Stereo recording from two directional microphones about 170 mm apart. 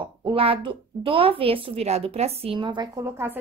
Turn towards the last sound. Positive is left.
turn(degrees=-15)  # may be behind; listen again after turning